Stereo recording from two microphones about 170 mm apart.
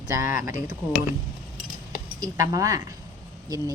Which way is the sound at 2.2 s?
20° right (ahead or behind).